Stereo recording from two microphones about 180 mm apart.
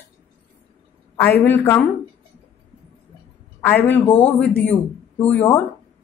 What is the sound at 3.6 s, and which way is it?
A woman's voice, 10° left (ahead or behind).